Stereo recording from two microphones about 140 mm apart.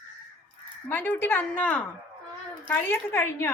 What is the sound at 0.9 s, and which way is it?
Speech, 15° left (ahead or behind).